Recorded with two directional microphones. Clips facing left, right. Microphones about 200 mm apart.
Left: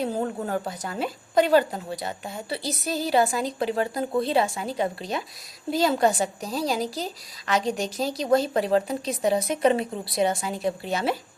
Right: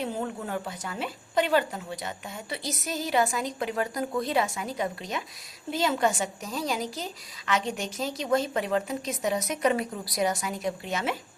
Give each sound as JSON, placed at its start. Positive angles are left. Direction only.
{"t": 0.0, "sound": "a woman's voice", "side_deg": 35}